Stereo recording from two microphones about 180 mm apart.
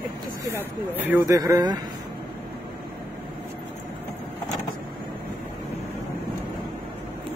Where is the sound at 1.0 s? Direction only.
15° right (ahead or behind).